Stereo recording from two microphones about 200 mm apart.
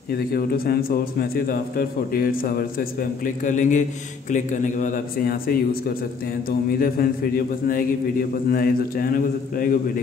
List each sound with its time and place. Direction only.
0.3 s a man's voice: 50° left (ahead or behind)
6.8 s a man's voice: 45° left (ahead or behind)